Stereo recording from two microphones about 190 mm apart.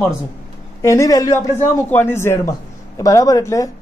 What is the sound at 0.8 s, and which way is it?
Speech, 15° left (ahead or behind).